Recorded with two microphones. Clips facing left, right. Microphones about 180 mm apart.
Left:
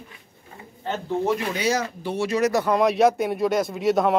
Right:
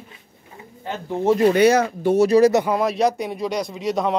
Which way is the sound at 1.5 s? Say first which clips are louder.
Right 9 dB; 60° right (ahead or behind).